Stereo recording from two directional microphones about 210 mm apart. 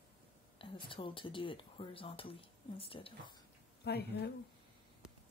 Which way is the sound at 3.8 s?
50° left (ahead or behind).